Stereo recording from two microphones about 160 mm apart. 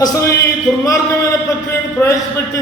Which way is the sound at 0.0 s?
20° left (ahead or behind).